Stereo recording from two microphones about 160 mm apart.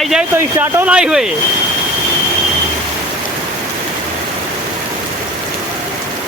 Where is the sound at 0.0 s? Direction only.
Centre (ahead or behind).